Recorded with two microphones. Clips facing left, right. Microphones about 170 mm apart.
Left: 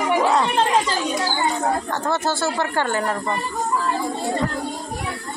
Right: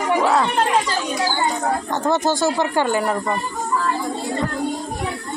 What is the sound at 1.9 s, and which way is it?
Speech, 15° right (ahead or behind).